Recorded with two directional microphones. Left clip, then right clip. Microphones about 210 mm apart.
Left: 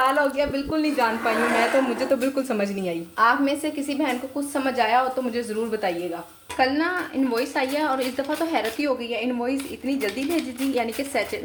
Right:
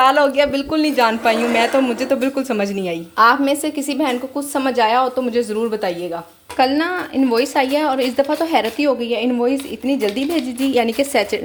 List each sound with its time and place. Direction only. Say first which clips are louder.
0.0 s a woman's voice: right 8 dB; 40° right (ahead or behind)
3.2 s a woman's voice: right 7 dB; 40° right (ahead or behind)